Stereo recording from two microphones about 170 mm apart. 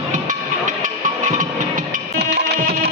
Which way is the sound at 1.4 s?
50° right (ahead or behind).